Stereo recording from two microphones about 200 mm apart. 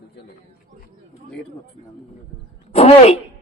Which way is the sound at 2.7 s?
30° left (ahead or behind).